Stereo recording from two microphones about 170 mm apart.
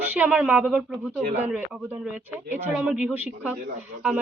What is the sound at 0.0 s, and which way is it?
Speech, 10° right (ahead or behind).